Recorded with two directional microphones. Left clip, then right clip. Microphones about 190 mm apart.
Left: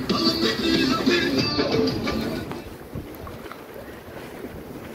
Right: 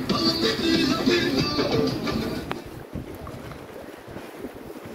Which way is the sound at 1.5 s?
40° right (ahead or behind).